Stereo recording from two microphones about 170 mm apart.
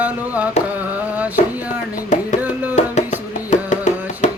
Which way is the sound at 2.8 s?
45° left (ahead or behind).